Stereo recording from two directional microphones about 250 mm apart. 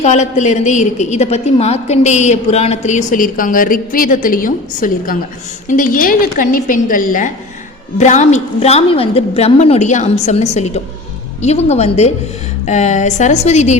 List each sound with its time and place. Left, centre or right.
0.0 s a woman's voice: left